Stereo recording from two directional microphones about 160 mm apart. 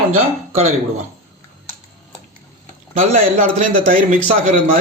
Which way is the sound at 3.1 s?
60° right (ahead or behind).